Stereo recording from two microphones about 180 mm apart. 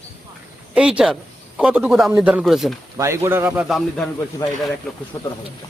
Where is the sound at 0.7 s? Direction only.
5° right (ahead or behind).